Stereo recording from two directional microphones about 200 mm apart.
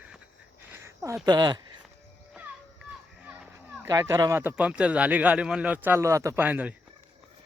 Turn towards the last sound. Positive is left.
turn(degrees=-10)  # may be behind; listen again after turning